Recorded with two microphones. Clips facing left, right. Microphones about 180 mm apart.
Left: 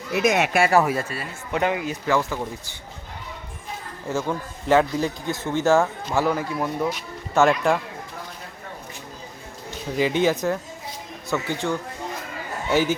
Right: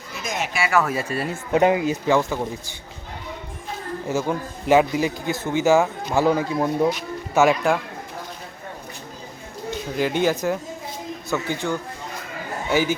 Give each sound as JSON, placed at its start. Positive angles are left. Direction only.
{"t": 0.1, "sound": "speech", "side_deg": 75}
{"t": 1.1, "sound": "speech", "side_deg": -45}
{"t": 1.5, "sound": "speech", "side_deg": -25}
{"t": 4.1, "sound": "speech", "side_deg": -10}
{"t": 6.9, "sound": "speech", "side_deg": -5}
{"t": 10.0, "sound": "speech", "side_deg": 0}
{"t": 12.7, "sound": "speech", "side_deg": 0}